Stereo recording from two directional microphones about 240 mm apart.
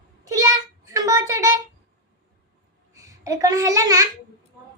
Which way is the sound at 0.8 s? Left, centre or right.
Centre.